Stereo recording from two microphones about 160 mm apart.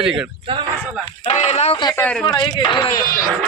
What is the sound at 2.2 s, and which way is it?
Speech, 30° left (ahead or behind).